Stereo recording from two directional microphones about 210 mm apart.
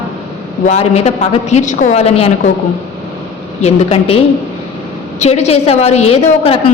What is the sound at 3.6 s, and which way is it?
A man's voice, 30° left (ahead or behind).